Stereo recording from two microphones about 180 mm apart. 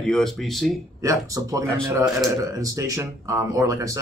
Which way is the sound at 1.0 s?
20° right (ahead or behind).